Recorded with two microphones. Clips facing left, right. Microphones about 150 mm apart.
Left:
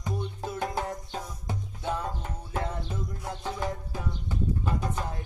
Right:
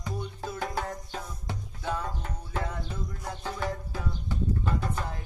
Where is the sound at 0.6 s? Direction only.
20° left (ahead or behind).